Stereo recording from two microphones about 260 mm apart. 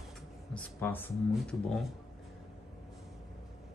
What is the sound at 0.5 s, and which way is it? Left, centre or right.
Speech, centre.